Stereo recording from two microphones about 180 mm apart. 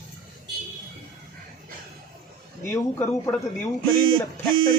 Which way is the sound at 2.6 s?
15° left (ahead or behind).